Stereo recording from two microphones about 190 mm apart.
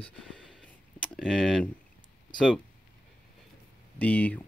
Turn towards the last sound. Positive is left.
turn(degrees=10)  # may be behind; listen again after turning